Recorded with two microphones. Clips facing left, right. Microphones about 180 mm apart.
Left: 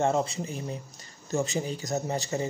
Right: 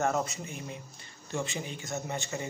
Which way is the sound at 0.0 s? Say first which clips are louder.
Left 4 dB; 30° left (ahead or behind).